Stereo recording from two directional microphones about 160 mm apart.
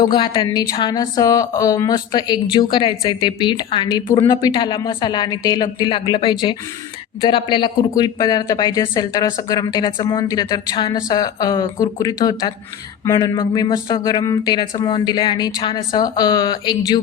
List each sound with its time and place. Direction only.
0.0 s speech: 25° left (ahead or behind)